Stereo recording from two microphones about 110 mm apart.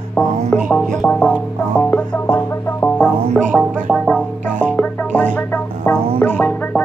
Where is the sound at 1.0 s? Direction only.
10° left (ahead or behind).